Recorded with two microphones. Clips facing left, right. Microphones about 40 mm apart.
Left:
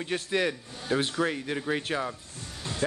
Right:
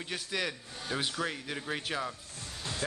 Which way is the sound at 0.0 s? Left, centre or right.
Centre.